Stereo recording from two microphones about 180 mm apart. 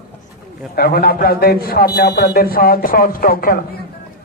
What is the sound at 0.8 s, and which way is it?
A man's voice, 55° left (ahead or behind).